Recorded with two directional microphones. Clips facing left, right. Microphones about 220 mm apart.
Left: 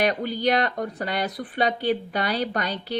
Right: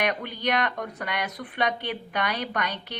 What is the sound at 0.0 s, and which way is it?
Speech, 35° left (ahead or behind).